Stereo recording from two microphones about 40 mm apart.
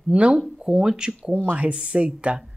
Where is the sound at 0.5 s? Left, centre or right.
Centre.